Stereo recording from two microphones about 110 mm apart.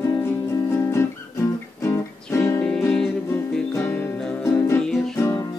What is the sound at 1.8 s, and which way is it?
Music, 25° left (ahead or behind).